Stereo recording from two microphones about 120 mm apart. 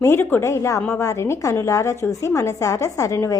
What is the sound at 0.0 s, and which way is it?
A woman's voice, 20° left (ahead or behind).